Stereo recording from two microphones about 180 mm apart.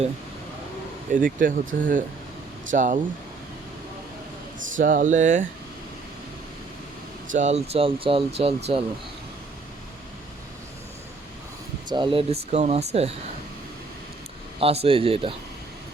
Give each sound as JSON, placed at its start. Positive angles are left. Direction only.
{"t": 1.1, "sound": "speech", "side_deg": -50}
{"t": 4.8, "sound": "speech", "side_deg": -50}
{"t": 7.3, "sound": "speech", "side_deg": -40}
{"t": 11.9, "sound": "speech", "side_deg": -25}
{"t": 14.6, "sound": "speech", "side_deg": -35}